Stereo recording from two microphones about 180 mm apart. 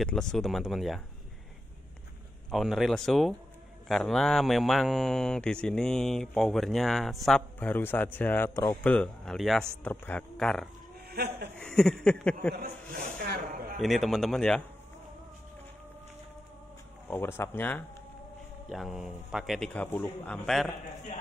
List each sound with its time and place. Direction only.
0.0 s speech: centre (ahead or behind)
2.5 s speech: centre (ahead or behind)
11.1 s speech: 60° right (ahead or behind)
11.5 s speech: 5° left (ahead or behind)
12.9 s a sound: 55° right (ahead or behind)
13.7 s speech: centre (ahead or behind)
17.1 s speech: 10° left (ahead or behind)
18.7 s speech: centre (ahead or behind)